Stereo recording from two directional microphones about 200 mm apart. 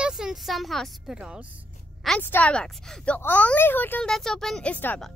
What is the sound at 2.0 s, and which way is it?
Speech, 5° left (ahead or behind).